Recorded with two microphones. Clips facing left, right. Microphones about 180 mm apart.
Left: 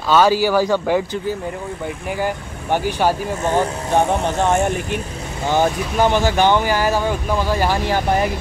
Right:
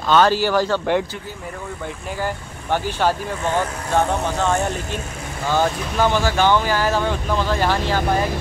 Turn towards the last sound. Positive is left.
turn(degrees=10)  # may be behind; listen again after turning